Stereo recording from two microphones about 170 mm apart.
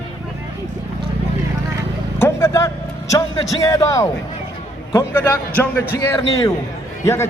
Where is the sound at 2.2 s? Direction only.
15° left (ahead or behind).